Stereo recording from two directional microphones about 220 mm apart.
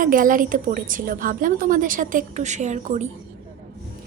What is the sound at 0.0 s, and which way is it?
A woman's voice, 40° right (ahead or behind).